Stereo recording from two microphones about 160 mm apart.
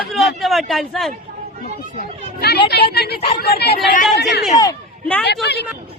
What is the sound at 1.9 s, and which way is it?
A woman's voice, 85° left.